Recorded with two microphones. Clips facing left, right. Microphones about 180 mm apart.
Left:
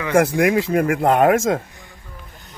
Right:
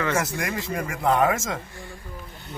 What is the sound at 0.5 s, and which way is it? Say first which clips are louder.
Speech: left 12 dB; 65° left (ahead or behind).